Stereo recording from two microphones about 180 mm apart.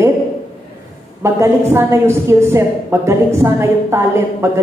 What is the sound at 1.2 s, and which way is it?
A woman's voice, 15° right (ahead or behind).